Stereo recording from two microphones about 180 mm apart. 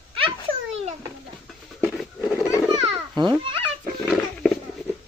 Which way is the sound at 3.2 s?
25° right (ahead or behind).